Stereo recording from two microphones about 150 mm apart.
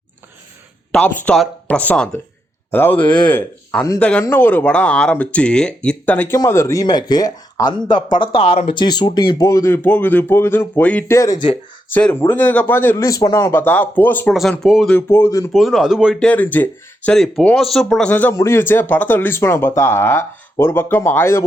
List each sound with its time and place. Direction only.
0.9 s speech: 5° left (ahead or behind)
11.2 s speech: 25° left (ahead or behind)
11.9 s speech: 10° left (ahead or behind)
14.7 s speech: centre (ahead or behind)
14.9 s speech: 15° left (ahead or behind)
15.5 s speech: centre (ahead or behind)
16.2 s speech: 10° left (ahead or behind)